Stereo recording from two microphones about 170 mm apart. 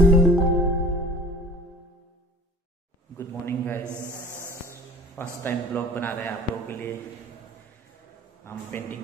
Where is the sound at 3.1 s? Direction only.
15° left (ahead or behind).